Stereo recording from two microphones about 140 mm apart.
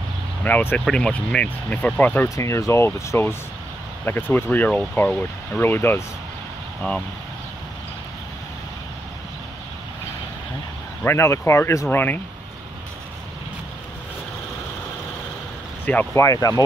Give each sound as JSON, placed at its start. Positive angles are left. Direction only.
{"t": 0.4, "sound": "speech", "side_deg": 15}
{"t": 11.1, "sound": "speech", "side_deg": 20}
{"t": 15.8, "sound": "speech", "side_deg": 15}